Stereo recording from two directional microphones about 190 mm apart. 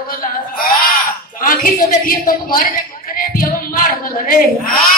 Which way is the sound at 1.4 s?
50° left (ahead or behind).